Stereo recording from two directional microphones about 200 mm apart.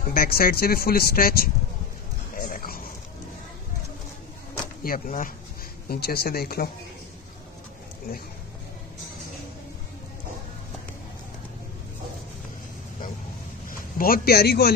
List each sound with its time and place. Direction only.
0.1 s speech: 45° left (ahead or behind)
2.3 s dog: 45° left (ahead or behind)
4.8 s speech: 45° left (ahead or behind)
13.7 s a man's voice: 45° left (ahead or behind)